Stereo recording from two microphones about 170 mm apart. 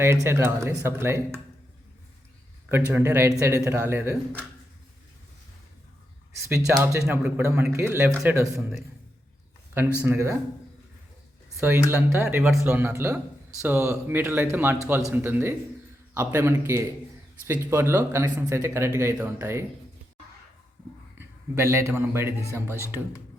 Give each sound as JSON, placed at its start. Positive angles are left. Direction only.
{"t": 0.0, "sound": "speech", "side_deg": -15}
{"t": 2.6, "sound": "speech", "side_deg": -15}
{"t": 6.5, "sound": "speech", "side_deg": -15}
{"t": 10.0, "sound": "speech", "side_deg": -15}
{"t": 11.9, "sound": "speech", "side_deg": -15}
{"t": 21.2, "sound": "a man's voice", "side_deg": -15}